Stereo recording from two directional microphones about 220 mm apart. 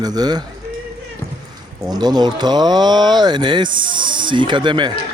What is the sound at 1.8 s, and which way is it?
Speech, 20° right (ahead or behind).